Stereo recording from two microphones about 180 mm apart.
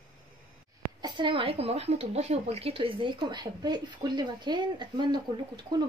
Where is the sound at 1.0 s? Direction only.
25° right (ahead or behind).